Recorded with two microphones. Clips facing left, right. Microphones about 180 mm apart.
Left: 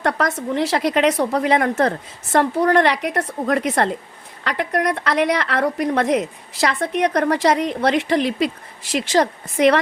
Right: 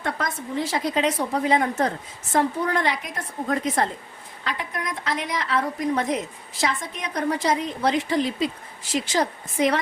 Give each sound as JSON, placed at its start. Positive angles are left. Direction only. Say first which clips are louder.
{"t": 0.0, "sound": "a woman's voice", "louder": "left 7 dB", "side_deg": 75}